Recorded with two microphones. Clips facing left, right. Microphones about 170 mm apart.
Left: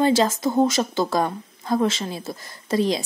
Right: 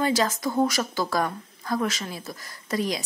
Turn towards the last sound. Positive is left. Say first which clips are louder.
# left 6 dB
turn(degrees=25)  # may be behind; listen again after turning